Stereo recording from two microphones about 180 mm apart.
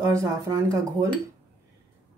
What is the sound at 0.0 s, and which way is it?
Speech, 15° right (ahead or behind).